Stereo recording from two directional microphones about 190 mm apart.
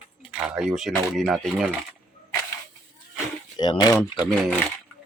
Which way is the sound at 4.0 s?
Centre (ahead or behind).